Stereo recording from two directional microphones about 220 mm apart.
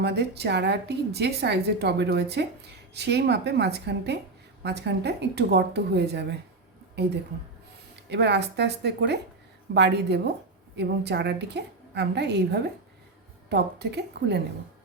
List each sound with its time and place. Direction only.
0.0 s a woman's voice: 50° right (ahead or behind)
8.1 s a woman's voice: 50° right (ahead or behind)